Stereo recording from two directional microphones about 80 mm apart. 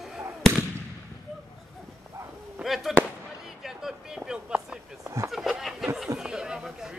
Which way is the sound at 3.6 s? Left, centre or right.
Centre.